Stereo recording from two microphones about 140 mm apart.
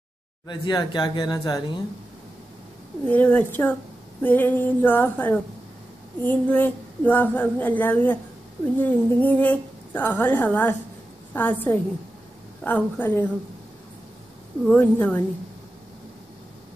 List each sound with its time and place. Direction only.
0.5 s speech: 30° left (ahead or behind)
3.1 s a woman's voice: 15° left (ahead or behind)
14.7 s a woman's voice: 10° left (ahead or behind)